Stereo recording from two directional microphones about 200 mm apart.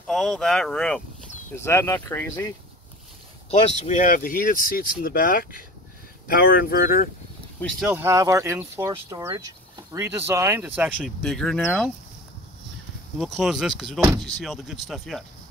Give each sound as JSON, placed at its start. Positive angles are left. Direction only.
{"t": 0.0, "sound": "speech", "side_deg": 0}
{"t": 3.7, "sound": "speech", "side_deg": 35}
{"t": 7.8, "sound": "speech", "side_deg": -10}
{"t": 13.2, "sound": "speech", "side_deg": 0}